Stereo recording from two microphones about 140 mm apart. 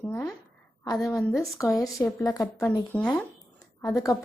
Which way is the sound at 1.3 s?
25° left (ahead or behind).